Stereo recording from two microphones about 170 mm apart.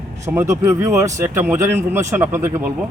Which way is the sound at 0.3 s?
15° right (ahead or behind).